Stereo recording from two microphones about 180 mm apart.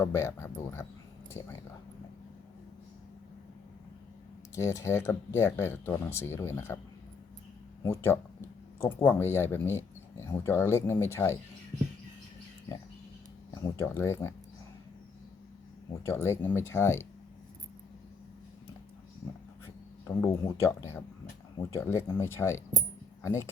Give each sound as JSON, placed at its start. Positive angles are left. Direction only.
{"t": 0.0, "sound": "speech", "side_deg": 15}
{"t": 4.5, "sound": "speech", "side_deg": 15}
{"t": 7.8, "sound": "speech", "side_deg": 10}
{"t": 13.5, "sound": "a sound", "side_deg": 20}
{"t": 13.8, "sound": "speech", "side_deg": 15}
{"t": 16.0, "sound": "speech", "side_deg": 15}
{"t": 20.1, "sound": "speech", "side_deg": 20}